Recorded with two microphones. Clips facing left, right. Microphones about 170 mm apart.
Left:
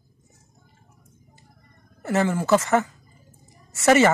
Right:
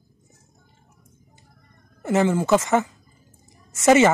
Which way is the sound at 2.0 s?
20° right (ahead or behind).